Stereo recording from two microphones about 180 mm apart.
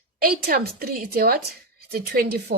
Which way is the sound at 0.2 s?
55° right (ahead or behind).